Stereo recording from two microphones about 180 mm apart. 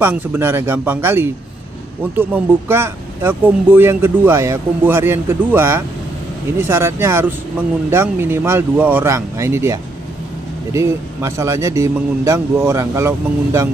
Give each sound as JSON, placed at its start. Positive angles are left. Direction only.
{"t": 0.0, "sound": "speech", "side_deg": -10}
{"t": 2.7, "sound": "speech", "side_deg": -15}